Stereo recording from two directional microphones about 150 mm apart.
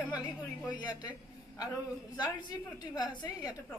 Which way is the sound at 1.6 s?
25° left (ahead or behind).